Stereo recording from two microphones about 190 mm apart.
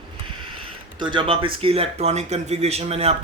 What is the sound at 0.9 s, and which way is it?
Speech, 25° right (ahead or behind).